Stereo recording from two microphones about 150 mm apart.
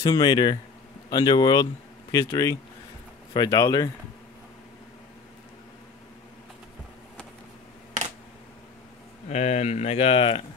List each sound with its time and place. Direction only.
0.0 s speech: 30° left (ahead or behind)
9.3 s speech: 50° left (ahead or behind)